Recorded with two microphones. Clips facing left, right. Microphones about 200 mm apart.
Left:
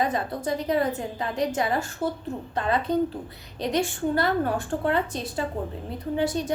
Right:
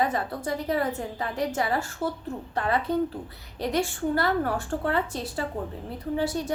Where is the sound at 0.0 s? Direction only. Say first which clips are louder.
Left 1 dB; 20° left (ahead or behind).